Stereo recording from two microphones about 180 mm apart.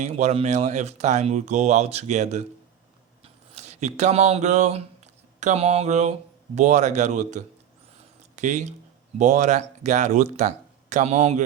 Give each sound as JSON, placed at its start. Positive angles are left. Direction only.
{"t": 0.0, "sound": "speech", "side_deg": -35}